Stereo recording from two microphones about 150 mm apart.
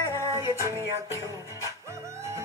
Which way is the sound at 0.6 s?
20° right (ahead or behind).